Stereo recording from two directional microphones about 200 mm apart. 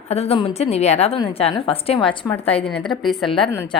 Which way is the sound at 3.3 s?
25° left (ahead or behind).